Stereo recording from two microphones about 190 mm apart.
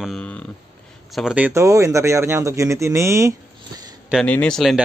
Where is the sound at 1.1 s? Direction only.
5° right (ahead or behind).